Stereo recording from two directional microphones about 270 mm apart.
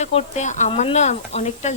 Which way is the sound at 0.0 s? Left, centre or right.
Left.